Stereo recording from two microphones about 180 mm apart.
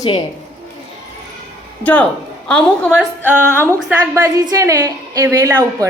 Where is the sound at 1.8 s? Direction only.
10° left (ahead or behind).